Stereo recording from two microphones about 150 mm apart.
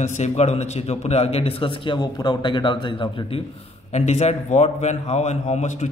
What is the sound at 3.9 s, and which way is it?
A man's voice, 45° left (ahead or behind).